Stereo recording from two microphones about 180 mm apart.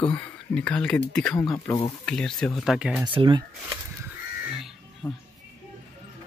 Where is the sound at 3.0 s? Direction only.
25° right (ahead or behind).